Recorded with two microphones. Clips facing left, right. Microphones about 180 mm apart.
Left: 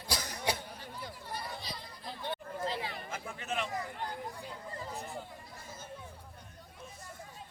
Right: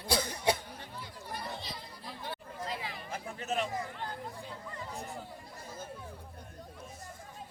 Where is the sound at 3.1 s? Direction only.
40° right (ahead or behind).